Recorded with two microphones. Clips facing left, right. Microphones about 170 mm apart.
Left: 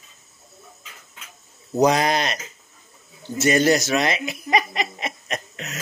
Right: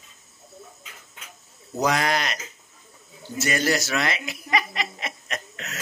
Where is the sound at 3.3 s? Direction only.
20° left (ahead or behind).